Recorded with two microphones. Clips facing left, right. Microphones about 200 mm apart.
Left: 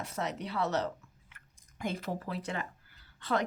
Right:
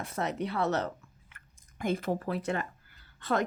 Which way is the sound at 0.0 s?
50° right (ahead or behind).